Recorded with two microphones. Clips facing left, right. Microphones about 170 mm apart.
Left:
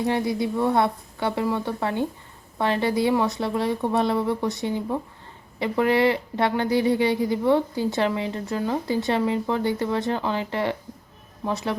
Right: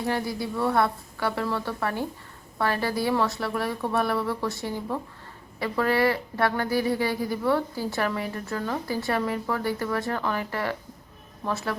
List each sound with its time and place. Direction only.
0.0 s speech: 20° left (ahead or behind)